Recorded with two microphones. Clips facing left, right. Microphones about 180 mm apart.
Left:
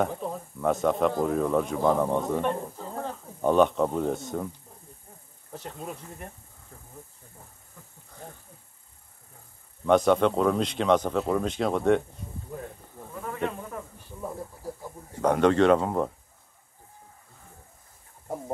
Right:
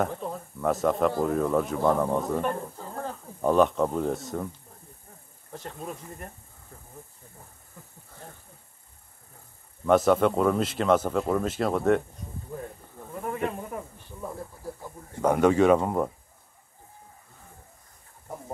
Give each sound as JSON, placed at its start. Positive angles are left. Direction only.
{"t": 0.0, "sound": "speech", "side_deg": 0}
{"t": 5.5, "sound": "speech", "side_deg": 5}
{"t": 9.8, "sound": "speech", "side_deg": -5}
{"t": 12.4, "sound": "a sound", "side_deg": 0}
{"t": 13.1, "sound": "snake", "side_deg": -25}
{"t": 13.5, "sound": "speech", "side_deg": -20}
{"t": 15.2, "sound": "speech", "side_deg": -10}